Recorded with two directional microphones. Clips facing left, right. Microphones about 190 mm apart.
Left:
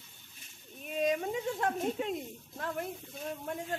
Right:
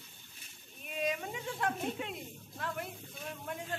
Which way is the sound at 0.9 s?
40° left (ahead or behind).